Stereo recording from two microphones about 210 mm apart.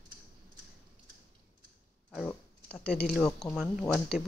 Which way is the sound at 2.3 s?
5° left (ahead or behind).